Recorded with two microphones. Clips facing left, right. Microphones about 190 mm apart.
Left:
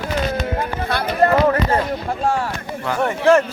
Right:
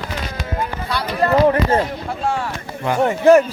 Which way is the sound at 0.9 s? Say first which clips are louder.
Left 3 dB; 55° left (ahead or behind).